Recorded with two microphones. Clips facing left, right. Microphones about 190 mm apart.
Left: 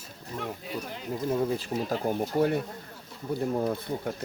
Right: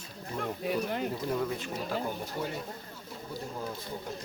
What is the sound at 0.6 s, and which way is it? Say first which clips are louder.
Speech: right 5 dB; 60° right (ahead or behind).